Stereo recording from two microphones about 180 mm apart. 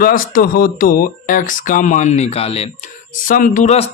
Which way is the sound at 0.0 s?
50° left (ahead or behind).